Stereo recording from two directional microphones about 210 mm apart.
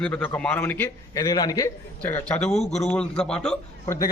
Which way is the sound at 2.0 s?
5° left (ahead or behind).